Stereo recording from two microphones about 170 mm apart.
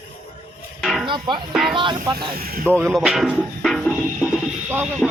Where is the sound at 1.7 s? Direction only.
25° right (ahead or behind).